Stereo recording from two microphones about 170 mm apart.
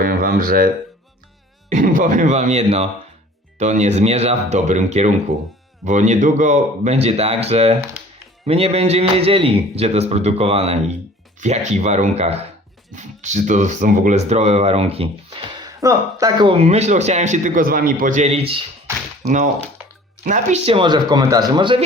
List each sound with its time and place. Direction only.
0.0 s a sound: 55° right (ahead or behind)
1.7 s a man's voice: 50° right (ahead or behind); by 16.6 s 25° right (ahead or behind)
16.6 s a man's voice: 40° right (ahead or behind)
20.2 s speech: 45° right (ahead or behind); by 21.8 s 30° right (ahead or behind)